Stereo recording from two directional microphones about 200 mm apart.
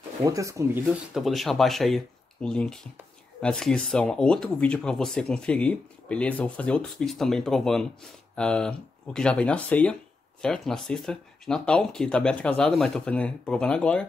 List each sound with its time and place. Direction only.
0.2 s speech: 15° right (ahead or behind)
1.1 s speech: centre (ahead or behind)